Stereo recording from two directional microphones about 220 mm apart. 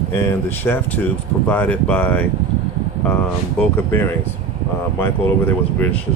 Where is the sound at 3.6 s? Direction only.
10° left (ahead or behind).